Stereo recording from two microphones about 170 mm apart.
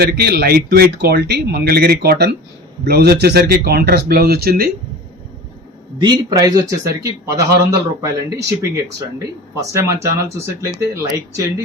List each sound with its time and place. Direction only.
0.0 s speech: 65° right (ahead or behind)
6.0 s a man's voice: 25° right (ahead or behind)